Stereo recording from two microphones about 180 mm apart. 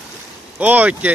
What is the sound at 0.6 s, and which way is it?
Speech, 10° right (ahead or behind).